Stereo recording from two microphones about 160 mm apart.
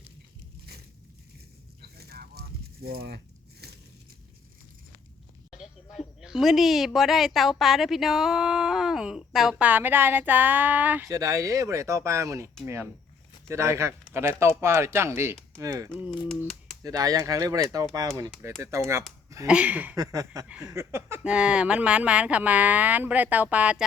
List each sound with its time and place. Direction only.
1.8 s a sound: 80° right
5.5 s speech: 5° right (ahead or behind)
11.1 s speech: 20° right (ahead or behind)
20.0 s speech: 20° right (ahead or behind)